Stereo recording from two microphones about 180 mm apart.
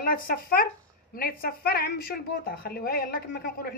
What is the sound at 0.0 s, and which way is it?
A woman's voice, 55° left (ahead or behind).